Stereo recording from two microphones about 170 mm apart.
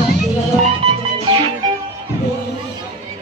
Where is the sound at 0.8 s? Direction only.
35° right (ahead or behind).